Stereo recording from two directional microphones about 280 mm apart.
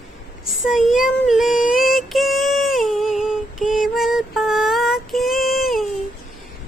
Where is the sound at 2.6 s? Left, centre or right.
Centre.